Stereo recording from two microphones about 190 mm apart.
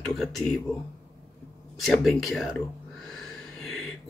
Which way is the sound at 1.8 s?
Centre (ahead or behind).